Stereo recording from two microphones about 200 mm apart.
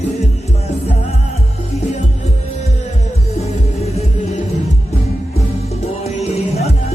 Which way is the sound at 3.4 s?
30° left (ahead or behind).